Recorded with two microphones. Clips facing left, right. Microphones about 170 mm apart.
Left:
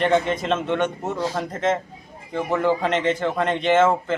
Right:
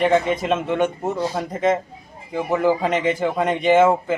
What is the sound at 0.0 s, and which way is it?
A man's voice, 5° right (ahead or behind).